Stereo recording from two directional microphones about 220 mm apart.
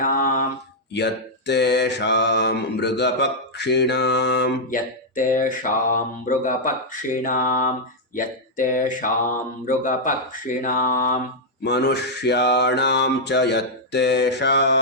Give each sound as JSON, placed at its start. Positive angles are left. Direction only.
{"t": 0.0, "sound": "mantra", "side_deg": 40}
{"t": 0.9, "sound": "mantra", "side_deg": 50}
{"t": 8.1, "sound": "speech", "side_deg": 35}
{"t": 9.6, "sound": "mantra", "side_deg": 35}
{"t": 11.6, "sound": "mantra", "side_deg": 50}